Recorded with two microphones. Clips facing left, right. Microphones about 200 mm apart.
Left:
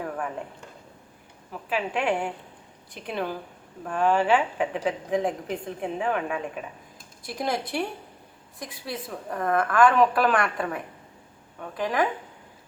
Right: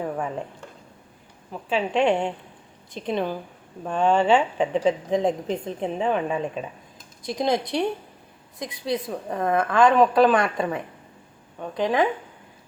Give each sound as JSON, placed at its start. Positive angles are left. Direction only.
{"t": 1.7, "sound": "a woman's voice", "side_deg": -25}
{"t": 11.8, "sound": "a woman's voice", "side_deg": -20}